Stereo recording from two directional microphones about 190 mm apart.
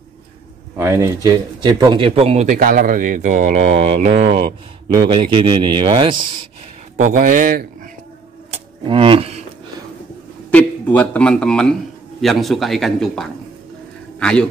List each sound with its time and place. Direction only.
0.7 s speech: 15° right (ahead or behind)
7.0 s speech: 45° right (ahead or behind)
8.5 s a sound: 25° right (ahead or behind)
10.5 s a man's voice: 10° left (ahead or behind)